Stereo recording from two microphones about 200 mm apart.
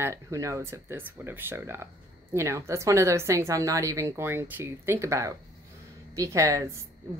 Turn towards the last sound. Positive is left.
turn(degrees=-15)  # may be behind; listen again after turning